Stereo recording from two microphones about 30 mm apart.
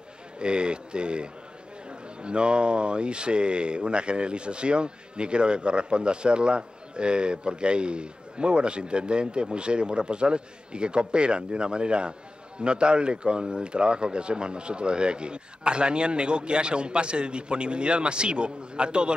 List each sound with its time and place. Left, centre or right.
0.4 s speech: right